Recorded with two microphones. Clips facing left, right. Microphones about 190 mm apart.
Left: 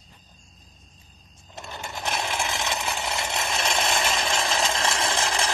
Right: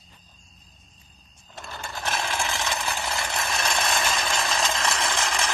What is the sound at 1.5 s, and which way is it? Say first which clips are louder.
Sewing machine: left 1 dB; 20° left (ahead or behind).